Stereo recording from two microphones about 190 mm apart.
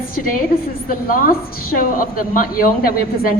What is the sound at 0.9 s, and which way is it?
A woman's voice, 45° left (ahead or behind).